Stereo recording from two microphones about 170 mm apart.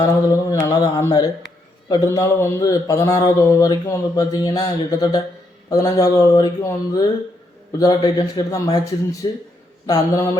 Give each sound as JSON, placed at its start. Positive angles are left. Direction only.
{"t": 0.0, "sound": "speech", "side_deg": 25}